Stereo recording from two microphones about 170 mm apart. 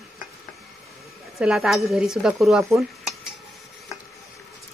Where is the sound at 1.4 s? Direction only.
Centre (ahead or behind).